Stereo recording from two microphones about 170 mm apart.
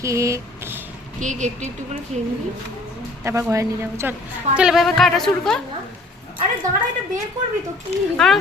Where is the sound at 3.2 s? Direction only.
15° right (ahead or behind).